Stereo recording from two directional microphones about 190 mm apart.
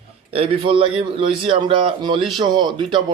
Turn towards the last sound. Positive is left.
turn(degrees=-25)  # may be behind; listen again after turning